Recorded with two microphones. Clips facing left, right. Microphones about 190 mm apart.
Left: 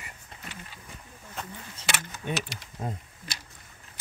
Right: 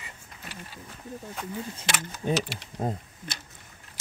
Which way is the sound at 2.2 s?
35° right (ahead or behind).